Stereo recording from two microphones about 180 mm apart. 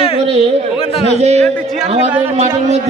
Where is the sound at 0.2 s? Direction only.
35° right (ahead or behind).